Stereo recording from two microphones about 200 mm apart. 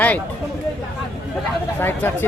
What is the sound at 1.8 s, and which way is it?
Speech, 10° left (ahead or behind).